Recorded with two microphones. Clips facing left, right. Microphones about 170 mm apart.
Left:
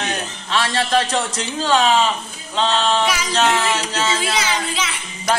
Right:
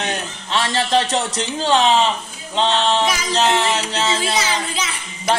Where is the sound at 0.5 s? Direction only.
25° right (ahead or behind).